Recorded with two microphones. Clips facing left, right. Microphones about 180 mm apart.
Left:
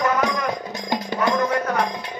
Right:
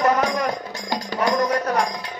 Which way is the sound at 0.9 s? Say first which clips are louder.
Even; 20° left (ahead or behind).